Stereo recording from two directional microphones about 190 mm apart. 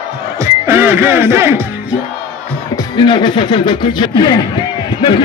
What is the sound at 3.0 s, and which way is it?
Speech, 25° left (ahead or behind).